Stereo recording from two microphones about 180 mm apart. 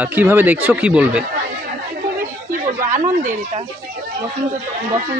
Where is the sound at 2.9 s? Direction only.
45° right (ahead or behind).